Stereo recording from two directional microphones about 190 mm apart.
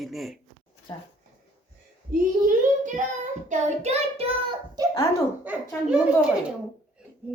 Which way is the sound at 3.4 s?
40° right (ahead or behind).